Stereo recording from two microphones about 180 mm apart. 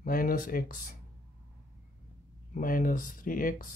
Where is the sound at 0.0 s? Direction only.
50° left (ahead or behind).